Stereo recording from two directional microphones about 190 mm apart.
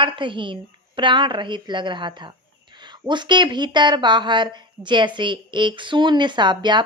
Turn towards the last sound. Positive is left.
turn(degrees=-25)  # may be behind; listen again after turning